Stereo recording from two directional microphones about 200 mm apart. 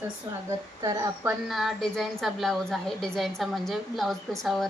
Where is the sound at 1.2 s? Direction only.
Centre (ahead or behind).